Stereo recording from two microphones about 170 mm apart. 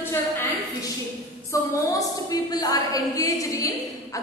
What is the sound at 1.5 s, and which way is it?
A woman's voice, 20° left (ahead or behind).